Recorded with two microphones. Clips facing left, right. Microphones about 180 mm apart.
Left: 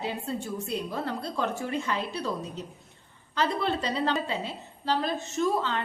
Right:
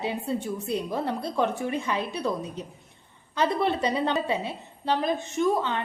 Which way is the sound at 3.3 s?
20° right (ahead or behind).